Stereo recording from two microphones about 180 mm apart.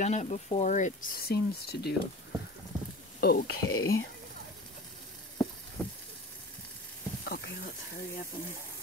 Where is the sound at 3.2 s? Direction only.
60° left (ahead or behind).